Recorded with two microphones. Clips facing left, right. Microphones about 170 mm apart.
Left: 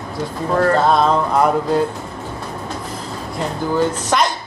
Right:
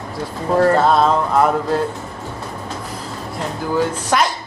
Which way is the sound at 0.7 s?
5° right (ahead or behind).